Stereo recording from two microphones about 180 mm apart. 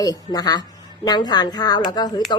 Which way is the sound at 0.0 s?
20° left (ahead or behind).